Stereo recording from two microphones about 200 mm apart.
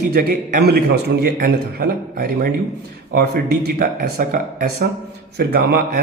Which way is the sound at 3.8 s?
45° right (ahead or behind).